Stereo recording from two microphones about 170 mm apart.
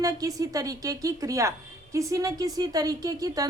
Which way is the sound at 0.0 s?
20° right (ahead or behind).